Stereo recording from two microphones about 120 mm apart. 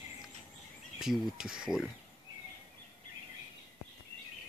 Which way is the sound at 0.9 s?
5° right (ahead or behind).